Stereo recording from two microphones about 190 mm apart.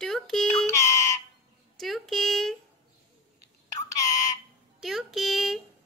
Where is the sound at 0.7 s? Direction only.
15° left (ahead or behind).